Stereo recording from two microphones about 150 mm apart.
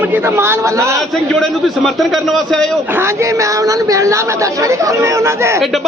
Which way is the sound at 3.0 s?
20° right (ahead or behind).